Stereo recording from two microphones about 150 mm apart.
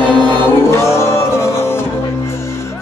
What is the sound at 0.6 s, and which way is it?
Music, 15° left (ahead or behind).